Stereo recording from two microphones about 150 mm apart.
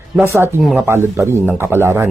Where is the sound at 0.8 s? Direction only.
15° right (ahead or behind).